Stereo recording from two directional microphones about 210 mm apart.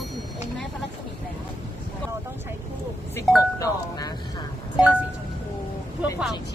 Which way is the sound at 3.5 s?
15° left (ahead or behind).